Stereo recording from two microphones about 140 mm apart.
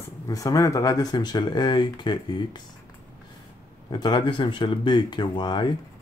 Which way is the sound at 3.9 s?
30° left (ahead or behind).